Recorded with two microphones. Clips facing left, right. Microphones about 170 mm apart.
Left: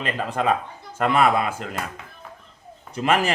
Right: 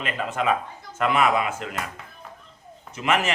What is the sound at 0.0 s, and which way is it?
A man's voice, 35° left (ahead or behind).